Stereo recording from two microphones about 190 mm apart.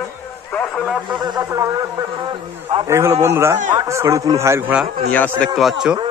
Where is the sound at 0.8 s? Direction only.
5° right (ahead or behind).